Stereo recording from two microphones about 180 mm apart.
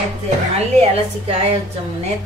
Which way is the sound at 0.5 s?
35° right (ahead or behind).